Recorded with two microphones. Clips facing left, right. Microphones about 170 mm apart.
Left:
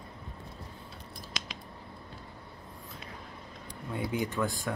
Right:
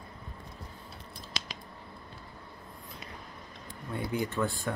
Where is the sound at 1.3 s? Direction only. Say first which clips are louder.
Right 1 dB; 30° right (ahead or behind).